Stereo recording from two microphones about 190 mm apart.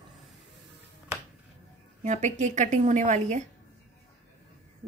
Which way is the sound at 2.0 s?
40° right (ahead or behind).